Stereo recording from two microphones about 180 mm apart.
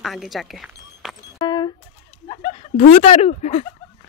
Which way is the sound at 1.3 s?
25° left (ahead or behind).